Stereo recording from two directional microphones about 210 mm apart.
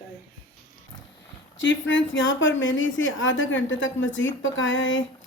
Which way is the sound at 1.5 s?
65° left (ahead or behind).